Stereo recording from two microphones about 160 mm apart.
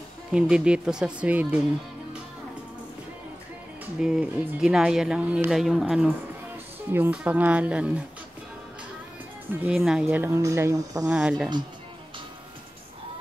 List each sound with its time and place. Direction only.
0.3 s speech: 5° right (ahead or behind)
3.8 s speech: 5° right (ahead or behind)
9.5 s speech: 5° right (ahead or behind); by 11.1 s 20° right (ahead or behind)
11.1 s speech: 5° right (ahead or behind)